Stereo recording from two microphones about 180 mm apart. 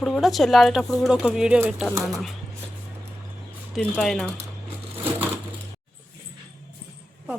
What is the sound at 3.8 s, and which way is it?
Speech, 5° left (ahead or behind).